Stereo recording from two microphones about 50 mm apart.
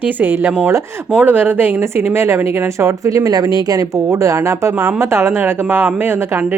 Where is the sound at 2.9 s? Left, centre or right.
Right.